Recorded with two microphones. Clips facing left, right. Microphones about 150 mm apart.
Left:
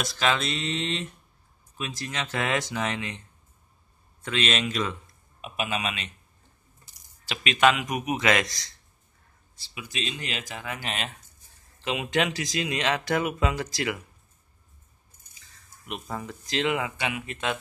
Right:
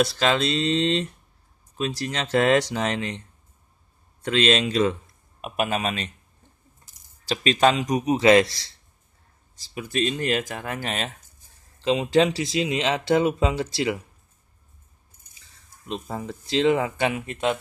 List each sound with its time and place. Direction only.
0.0 s speech: 35° right (ahead or behind)
4.2 s speech: 35° right (ahead or behind)
5.4 s speech: 50° right (ahead or behind)
7.2 s speech: 35° right (ahead or behind)
9.6 s speech: 50° right (ahead or behind)
11.8 s speech: 30° right (ahead or behind)
15.8 s speech: 25° right (ahead or behind)
16.9 s speech: 45° right (ahead or behind)
17.3 s speech: 25° right (ahead or behind)